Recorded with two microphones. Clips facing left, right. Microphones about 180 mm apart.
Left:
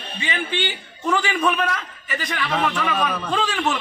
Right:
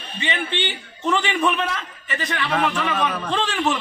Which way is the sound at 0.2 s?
5° left (ahead or behind).